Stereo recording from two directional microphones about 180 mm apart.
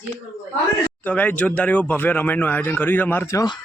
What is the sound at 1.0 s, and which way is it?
Speech, 10° left (ahead or behind).